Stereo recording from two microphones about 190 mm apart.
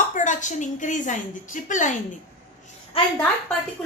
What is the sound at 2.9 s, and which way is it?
Speech, 30° left (ahead or behind).